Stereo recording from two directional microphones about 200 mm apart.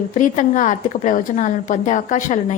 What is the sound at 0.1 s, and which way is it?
A woman's voice, 40° left (ahead or behind).